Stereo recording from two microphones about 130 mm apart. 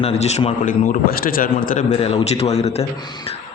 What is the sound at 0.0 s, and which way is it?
A man's voice, 55° left (ahead or behind).